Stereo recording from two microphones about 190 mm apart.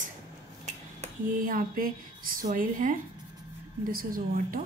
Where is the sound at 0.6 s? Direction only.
40° right (ahead or behind).